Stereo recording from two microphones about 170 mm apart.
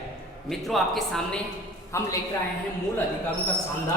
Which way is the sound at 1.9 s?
15° left (ahead or behind).